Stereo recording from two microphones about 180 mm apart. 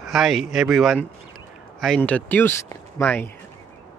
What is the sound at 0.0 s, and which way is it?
Speech, centre (ahead or behind).